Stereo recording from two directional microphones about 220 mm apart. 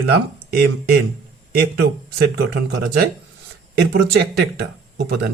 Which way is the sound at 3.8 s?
45° right (ahead or behind).